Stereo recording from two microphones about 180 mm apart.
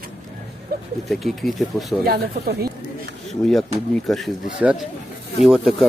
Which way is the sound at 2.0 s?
60° right (ahead or behind).